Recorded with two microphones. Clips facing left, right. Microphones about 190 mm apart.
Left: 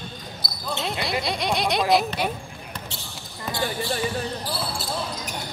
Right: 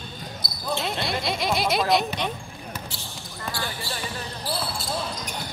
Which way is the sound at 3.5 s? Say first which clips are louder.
Left 6 dB; 20° left (ahead or behind).